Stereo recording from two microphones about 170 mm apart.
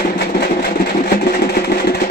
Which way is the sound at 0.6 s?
70° left (ahead or behind).